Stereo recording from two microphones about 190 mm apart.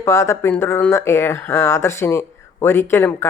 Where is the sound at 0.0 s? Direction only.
15° left (ahead or behind).